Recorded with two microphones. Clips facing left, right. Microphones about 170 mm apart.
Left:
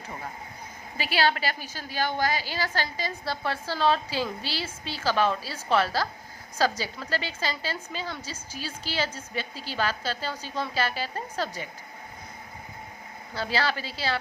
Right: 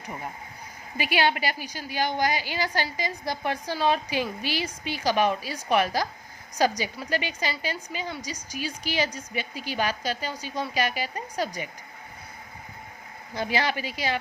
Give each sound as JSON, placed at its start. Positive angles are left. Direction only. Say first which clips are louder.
{"t": 0.9, "sound": "a woman's voice", "louder": "right 1 dB", "side_deg": -15}
{"t": 13.3, "sound": "a woman's voice", "louder": "right 1 dB", "side_deg": -15}